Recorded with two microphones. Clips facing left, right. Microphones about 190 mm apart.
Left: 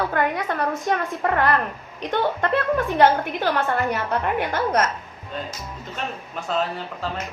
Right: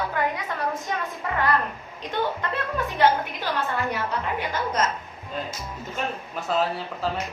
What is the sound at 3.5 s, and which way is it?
A woman's voice, 55° left (ahead or behind).